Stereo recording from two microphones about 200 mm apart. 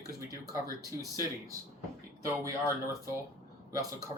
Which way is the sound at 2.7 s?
15° right (ahead or behind).